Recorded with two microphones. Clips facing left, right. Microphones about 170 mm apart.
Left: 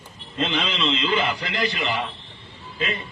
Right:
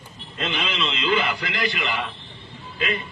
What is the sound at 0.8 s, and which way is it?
Speech, 25° left (ahead or behind).